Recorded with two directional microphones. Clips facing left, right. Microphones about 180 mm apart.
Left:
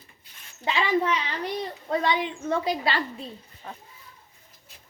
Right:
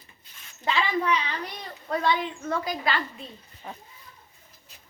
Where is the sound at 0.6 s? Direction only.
20° left (ahead or behind).